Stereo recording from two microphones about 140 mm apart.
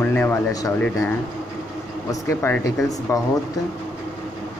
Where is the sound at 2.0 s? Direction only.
20° left (ahead or behind).